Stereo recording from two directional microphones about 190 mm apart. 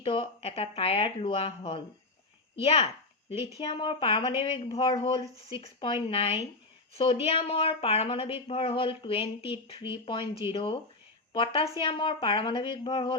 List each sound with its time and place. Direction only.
0.0 s a woman's voice: 30° left (ahead or behind)